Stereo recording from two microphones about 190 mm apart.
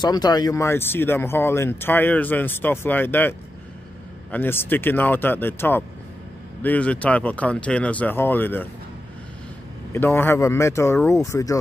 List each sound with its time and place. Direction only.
0.0 s speech: 20° left (ahead or behind)
9.9 s speech: 10° left (ahead or behind)